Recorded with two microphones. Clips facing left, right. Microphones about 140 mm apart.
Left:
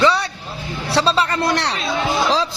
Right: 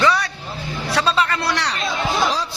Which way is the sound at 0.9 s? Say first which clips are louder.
Left 2 dB; 30° left (ahead or behind).